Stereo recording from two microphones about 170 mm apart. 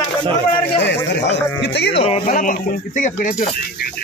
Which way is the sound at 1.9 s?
35° left (ahead or behind).